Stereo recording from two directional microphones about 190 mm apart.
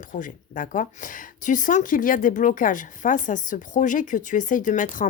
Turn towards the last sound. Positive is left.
turn(degrees=45)  # may be behind; listen again after turning